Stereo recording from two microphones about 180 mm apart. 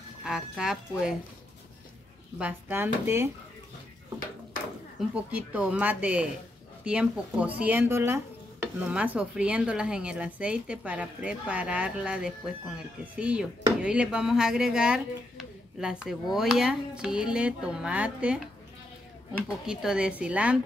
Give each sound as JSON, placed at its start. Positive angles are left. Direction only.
{"t": 0.2, "sound": "speech", "side_deg": -5}
{"t": 2.3, "sound": "speech", "side_deg": -10}
{"t": 5.1, "sound": "speech", "side_deg": -5}